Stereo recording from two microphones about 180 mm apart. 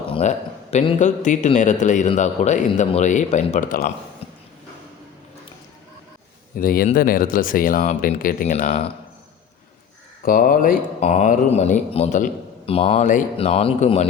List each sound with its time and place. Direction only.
0.1 s speech: 40° left (ahead or behind)
6.6 s speech: 55° left (ahead or behind)
10.2 s speech: 50° left (ahead or behind); by 14.1 s 35° left (ahead or behind)